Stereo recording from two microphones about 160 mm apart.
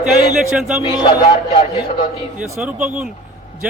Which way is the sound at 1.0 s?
30° left (ahead or behind).